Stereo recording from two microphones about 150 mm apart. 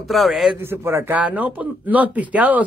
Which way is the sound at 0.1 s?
Centre (ahead or behind).